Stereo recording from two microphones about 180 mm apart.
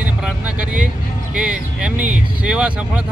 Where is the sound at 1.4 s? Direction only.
5° right (ahead or behind).